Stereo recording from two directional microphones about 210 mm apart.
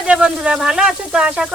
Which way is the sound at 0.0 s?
5° right (ahead or behind).